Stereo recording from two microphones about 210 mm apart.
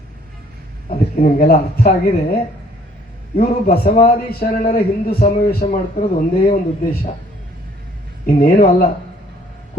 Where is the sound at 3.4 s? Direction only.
45° left (ahead or behind).